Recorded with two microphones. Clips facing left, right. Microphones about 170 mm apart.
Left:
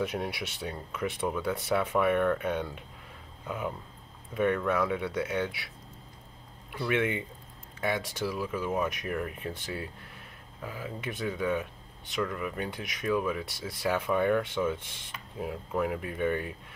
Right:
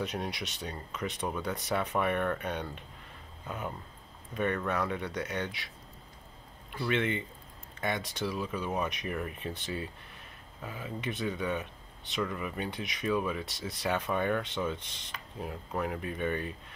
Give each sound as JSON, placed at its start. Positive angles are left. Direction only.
{"t": 0.1, "sound": "speech", "side_deg": 5}
{"t": 6.8, "sound": "speech", "side_deg": 5}